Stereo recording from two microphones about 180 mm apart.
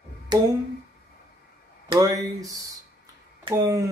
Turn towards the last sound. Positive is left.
turn(degrees=-15)  # may be behind; listen again after turning